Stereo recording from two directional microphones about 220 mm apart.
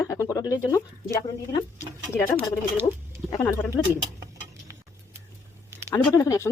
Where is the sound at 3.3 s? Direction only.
15° left (ahead or behind).